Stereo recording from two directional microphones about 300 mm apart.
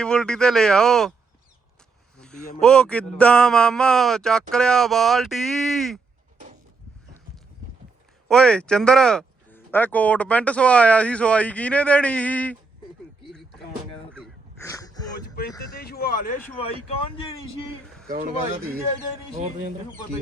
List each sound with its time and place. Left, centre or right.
0.0 s speech: centre
2.1 s a sound: centre
2.6 s speech: centre
8.3 s speech: centre
14.1 s a sound: centre
15.7 s speech: left
18.1 s speech: right